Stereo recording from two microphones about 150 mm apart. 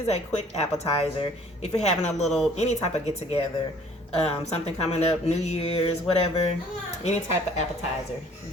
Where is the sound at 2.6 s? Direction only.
45° left (ahead or behind).